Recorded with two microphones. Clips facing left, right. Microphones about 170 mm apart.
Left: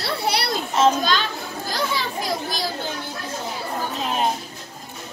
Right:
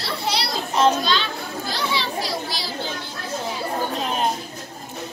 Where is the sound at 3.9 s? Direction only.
Centre (ahead or behind).